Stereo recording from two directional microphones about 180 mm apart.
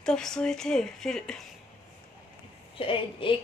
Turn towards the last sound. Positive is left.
turn(degrees=30)  # may be behind; listen again after turning